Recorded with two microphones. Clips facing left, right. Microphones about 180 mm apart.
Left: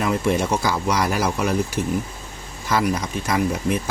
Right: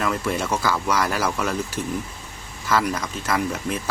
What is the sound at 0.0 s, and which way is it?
Speech, 20° left (ahead or behind).